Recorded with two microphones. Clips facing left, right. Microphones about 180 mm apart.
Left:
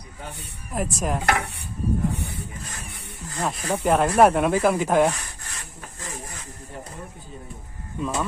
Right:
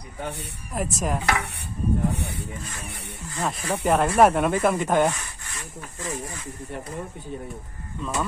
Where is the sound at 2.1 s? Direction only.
70° right (ahead or behind).